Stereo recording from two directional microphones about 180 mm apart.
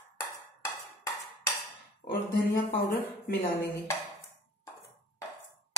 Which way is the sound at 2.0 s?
35° left (ahead or behind).